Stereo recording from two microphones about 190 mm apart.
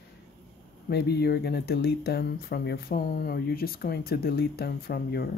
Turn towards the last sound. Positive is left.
turn(degrees=55)  # may be behind; listen again after turning